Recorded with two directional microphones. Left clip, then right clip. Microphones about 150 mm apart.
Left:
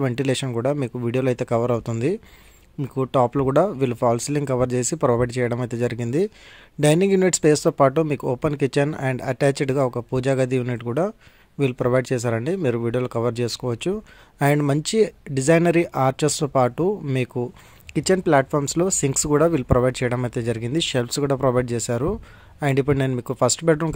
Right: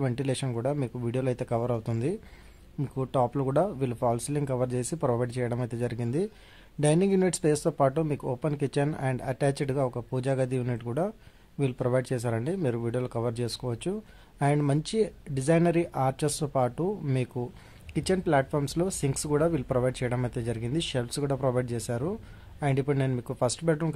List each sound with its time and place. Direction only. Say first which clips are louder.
0.0 s speech: left 8 dB; 30° left (ahead or behind)